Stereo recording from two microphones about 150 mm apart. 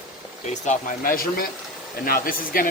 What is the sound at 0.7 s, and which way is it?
Speech, 70° left (ahead or behind).